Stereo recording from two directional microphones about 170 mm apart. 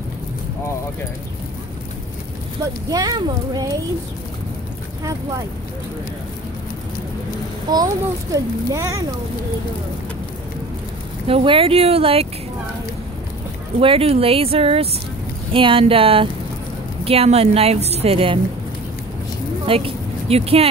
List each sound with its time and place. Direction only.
2.9 s a child's voice: 25° right (ahead or behind)
7.7 s a child's voice: 20° right (ahead or behind)
11.2 s a woman's voice: 30° right (ahead or behind)
13.7 s a woman's voice: 35° right (ahead or behind)
19.6 s a sound: 35° right (ahead or behind)